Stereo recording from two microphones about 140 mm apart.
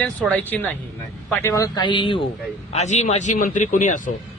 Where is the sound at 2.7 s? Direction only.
55° left (ahead or behind).